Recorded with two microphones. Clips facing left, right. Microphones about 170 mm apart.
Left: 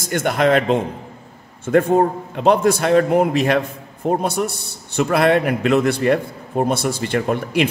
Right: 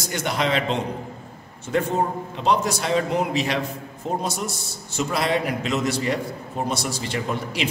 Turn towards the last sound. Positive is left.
turn(degrees=55)  # may be behind; listen again after turning